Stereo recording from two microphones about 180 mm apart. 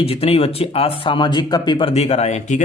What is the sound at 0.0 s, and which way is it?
Speech, 30° left (ahead or behind).